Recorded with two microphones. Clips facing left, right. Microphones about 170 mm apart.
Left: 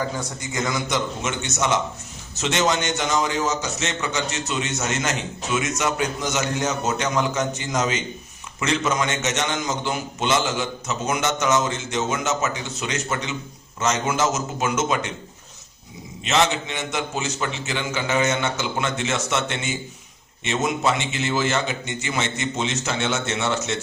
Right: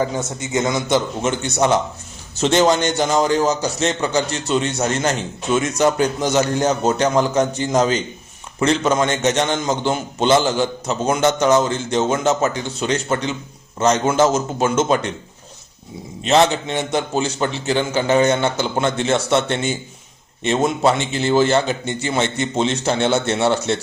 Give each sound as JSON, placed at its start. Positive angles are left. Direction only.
{"t": 0.0, "sound": "a man's voice", "side_deg": -25}
{"t": 16.2, "sound": "a man's voice", "side_deg": -35}